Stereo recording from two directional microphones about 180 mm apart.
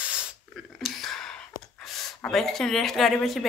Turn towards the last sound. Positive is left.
turn(degrees=0)  # may be behind; listen again after turning